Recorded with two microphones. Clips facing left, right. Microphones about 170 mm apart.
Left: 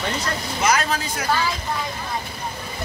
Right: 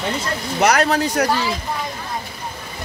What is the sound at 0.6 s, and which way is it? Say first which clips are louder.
Speech: right 6 dB; 65° right (ahead or behind).